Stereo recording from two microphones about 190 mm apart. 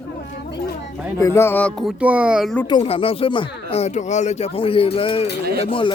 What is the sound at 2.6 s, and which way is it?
Speech, 25° left (ahead or behind).